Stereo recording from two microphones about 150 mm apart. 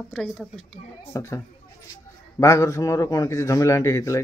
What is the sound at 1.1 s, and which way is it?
A man's voice, 20° left (ahead or behind).